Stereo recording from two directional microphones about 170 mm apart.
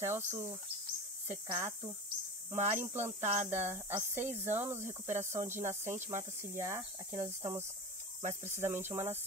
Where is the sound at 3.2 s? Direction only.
45° right (ahead or behind).